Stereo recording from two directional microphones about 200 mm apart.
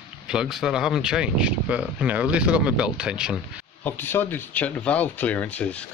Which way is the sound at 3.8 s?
10° left (ahead or behind).